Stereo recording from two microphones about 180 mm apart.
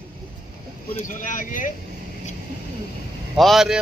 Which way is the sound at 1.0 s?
45° left (ahead or behind).